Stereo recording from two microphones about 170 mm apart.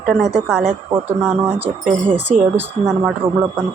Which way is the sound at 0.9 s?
15° right (ahead or behind).